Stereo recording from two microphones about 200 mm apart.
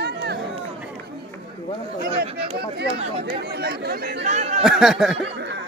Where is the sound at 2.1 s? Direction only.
30° right (ahead or behind).